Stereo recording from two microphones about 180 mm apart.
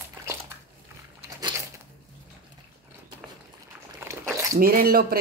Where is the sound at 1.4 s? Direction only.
20° right (ahead or behind).